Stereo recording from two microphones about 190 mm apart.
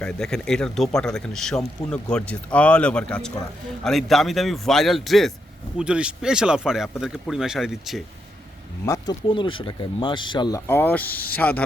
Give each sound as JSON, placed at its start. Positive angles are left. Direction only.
{"t": 0.0, "sound": "speech", "side_deg": 5}
{"t": 8.9, "sound": "speech", "side_deg": 25}
{"t": 10.7, "sound": "speech", "side_deg": 10}